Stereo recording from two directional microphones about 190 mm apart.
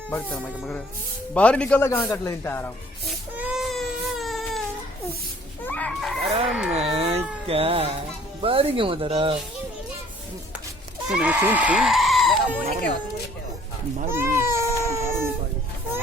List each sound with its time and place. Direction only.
0.1 s speech: 5° left (ahead or behind)
3.3 s baby cry: 5° right (ahead or behind)
5.6 s chicken: 10° left (ahead or behind)
6.4 s speech: 5° right (ahead or behind)
6.7 s cat: 30° right (ahead or behind)
8.4 s speech: 30° right (ahead or behind)
11.1 s speech: 5° right (ahead or behind)
14.1 s baby cry: 10° right (ahead or behind)